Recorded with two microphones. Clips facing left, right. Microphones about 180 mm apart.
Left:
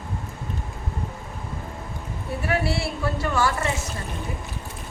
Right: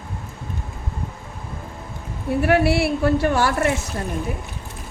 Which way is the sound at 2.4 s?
65° right (ahead or behind).